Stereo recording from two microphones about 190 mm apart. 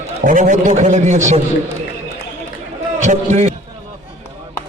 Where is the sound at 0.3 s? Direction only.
45° right (ahead or behind).